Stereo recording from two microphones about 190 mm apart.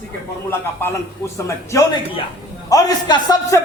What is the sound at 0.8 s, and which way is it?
Speech, 10° left (ahead or behind).